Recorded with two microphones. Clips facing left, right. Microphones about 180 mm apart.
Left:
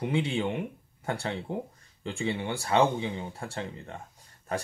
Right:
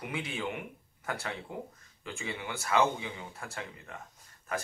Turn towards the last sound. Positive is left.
turn(degrees=30)  # may be behind; listen again after turning